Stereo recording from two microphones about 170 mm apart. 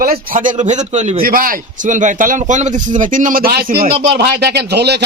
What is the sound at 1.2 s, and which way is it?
A man's voice, 55° right (ahead or behind).